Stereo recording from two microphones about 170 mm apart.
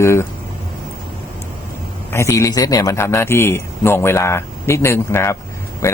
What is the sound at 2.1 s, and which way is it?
Speech, 15° left (ahead or behind).